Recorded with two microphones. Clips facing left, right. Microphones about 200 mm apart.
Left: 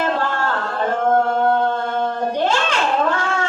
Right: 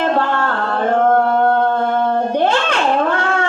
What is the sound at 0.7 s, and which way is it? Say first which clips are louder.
Singing: right 4 dB; 60° right (ahead or behind).